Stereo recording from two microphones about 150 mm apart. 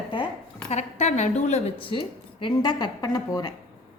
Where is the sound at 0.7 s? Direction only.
50° left (ahead or behind).